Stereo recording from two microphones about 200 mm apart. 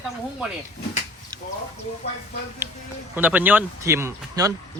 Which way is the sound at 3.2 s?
10° right (ahead or behind).